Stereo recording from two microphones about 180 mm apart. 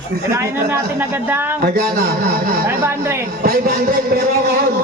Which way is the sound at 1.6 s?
55° right (ahead or behind).